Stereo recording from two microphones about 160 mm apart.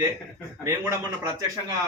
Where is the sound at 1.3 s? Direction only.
20° right (ahead or behind).